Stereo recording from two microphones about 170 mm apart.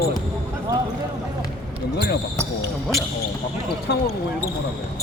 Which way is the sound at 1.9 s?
70° left (ahead or behind).